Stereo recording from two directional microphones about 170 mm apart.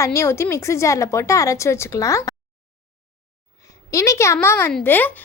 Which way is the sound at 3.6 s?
20° left (ahead or behind).